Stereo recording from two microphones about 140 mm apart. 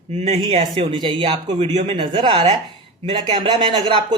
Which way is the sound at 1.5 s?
45° right (ahead or behind).